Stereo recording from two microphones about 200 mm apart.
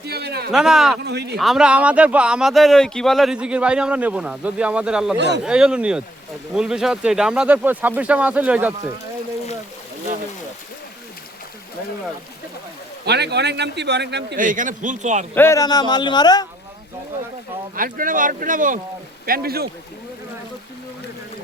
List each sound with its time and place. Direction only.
0.0 s speech: 55° right (ahead or behind)
0.5 s speech: centre (ahead or behind)
1.0 s a man's voice: 55° right (ahead or behind)
1.4 s speech: centre (ahead or behind)
5.1 s a man's voice: 55° right (ahead or behind)
5.4 s speech: 5° right (ahead or behind)
13.1 s a man's voice: 55° right (ahead or behind)
14.3 s a man's voice: 40° right (ahead or behind)
15.4 s a man's voice: 15° left (ahead or behind)
17.7 s speech: 45° right (ahead or behind)